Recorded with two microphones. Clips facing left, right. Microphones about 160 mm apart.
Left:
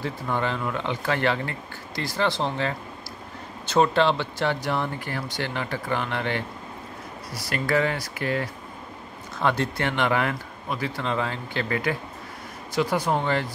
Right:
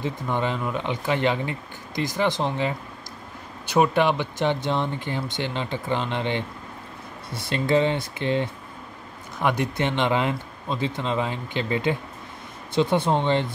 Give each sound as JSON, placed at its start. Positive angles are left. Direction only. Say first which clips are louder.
{"t": 0.0, "sound": "speech", "louder": "right 1 dB", "side_deg": -20}